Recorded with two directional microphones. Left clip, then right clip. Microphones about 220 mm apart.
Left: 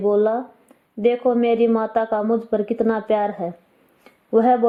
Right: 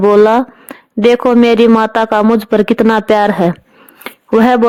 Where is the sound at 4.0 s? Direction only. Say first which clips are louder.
Right 7 dB; 45° right (ahead or behind).